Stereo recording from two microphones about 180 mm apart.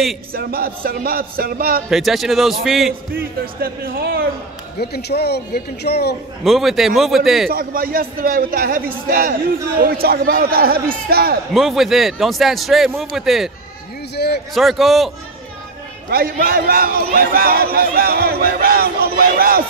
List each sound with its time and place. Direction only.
0.3 s a man's voice: 55° right (ahead or behind)
1.9 s a man's voice: centre (ahead or behind)
2.9 s a man's voice: 55° right (ahead or behind)
4.7 s speech: 65° left (ahead or behind)
6.4 s a man's voice: centre (ahead or behind)
7.5 s a man's voice: 55° right (ahead or behind)
11.5 s a man's voice: centre (ahead or behind)
14.1 s speech: 65° left (ahead or behind)
14.5 s a man's voice: centre (ahead or behind)
16.1 s a man's voice: 55° right (ahead or behind)